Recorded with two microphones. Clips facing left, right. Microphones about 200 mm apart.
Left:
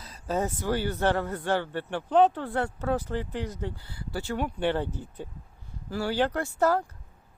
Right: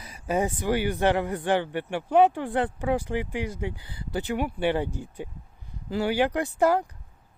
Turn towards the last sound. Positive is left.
turn(degrees=-15)  # may be behind; listen again after turning